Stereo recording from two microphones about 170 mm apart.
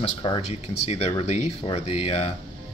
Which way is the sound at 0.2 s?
30° left (ahead or behind).